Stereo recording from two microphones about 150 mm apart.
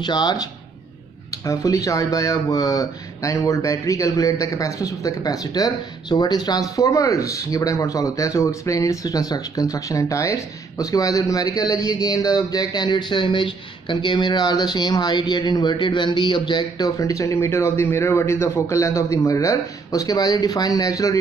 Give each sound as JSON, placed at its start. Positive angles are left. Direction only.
{"t": 0.0, "sound": "speech", "side_deg": 30}